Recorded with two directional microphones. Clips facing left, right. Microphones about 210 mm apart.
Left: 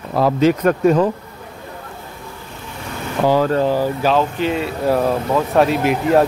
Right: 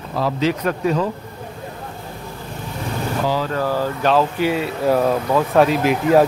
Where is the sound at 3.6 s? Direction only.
15° left (ahead or behind).